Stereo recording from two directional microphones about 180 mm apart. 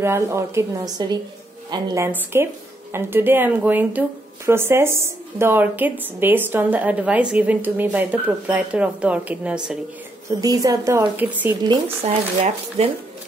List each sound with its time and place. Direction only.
0.0 s a woman's voice: 15° right (ahead or behind)
10.4 s a woman's voice: 20° right (ahead or behind)
11.6 s speech: 25° right (ahead or behind)